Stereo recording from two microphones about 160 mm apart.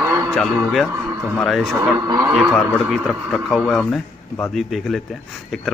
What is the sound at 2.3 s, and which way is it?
Speech, 5° right (ahead or behind).